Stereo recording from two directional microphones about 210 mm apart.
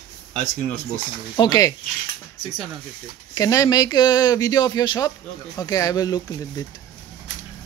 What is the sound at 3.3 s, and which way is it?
Speech, 15° left (ahead or behind).